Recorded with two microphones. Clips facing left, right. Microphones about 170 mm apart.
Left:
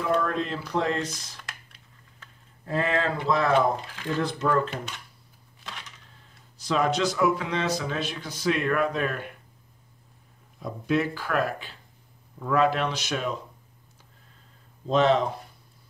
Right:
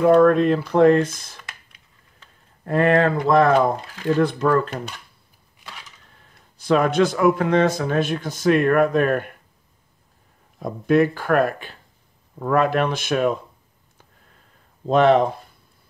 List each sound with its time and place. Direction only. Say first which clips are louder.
0.0 s speech: right 12 dB; 55° right (ahead or behind)
2.6 s a man's voice: right 9 dB; 55° right (ahead or behind)
5.6 s typewriter: even; 5° right (ahead or behind)
6.6 s a man's voice: right 7 dB; 55° right (ahead or behind)
10.6 s a man's voice: right 8 dB; 55° right (ahead or behind)
14.9 s speech: right 6 dB; 55° right (ahead or behind)